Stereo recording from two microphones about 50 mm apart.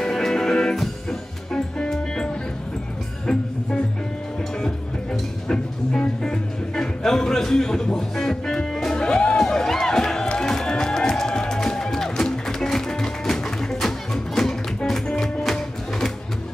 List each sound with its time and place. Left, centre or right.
0.0 s music: centre
5.5 s music: centre
14.8 s music: centre